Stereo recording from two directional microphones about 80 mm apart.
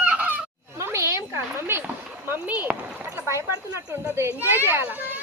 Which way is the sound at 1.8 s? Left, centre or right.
Right.